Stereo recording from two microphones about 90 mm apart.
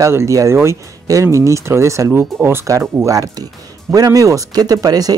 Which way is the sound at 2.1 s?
20° right (ahead or behind).